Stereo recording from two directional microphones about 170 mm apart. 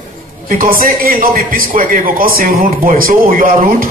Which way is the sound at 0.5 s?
55° right (ahead or behind).